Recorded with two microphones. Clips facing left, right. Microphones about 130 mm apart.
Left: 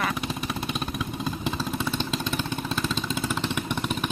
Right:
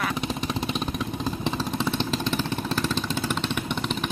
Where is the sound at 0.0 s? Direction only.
5° left (ahead or behind).